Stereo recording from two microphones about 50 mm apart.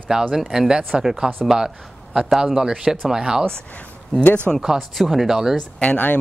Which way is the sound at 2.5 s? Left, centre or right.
Centre.